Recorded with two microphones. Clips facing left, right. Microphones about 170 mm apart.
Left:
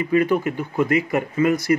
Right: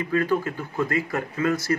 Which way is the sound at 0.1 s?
15° left (ahead or behind).